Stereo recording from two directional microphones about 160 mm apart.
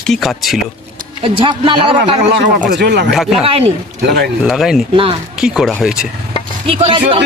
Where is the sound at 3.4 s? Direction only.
35° right (ahead or behind).